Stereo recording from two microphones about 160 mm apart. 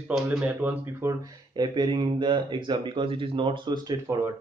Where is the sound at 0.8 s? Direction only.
15° right (ahead or behind).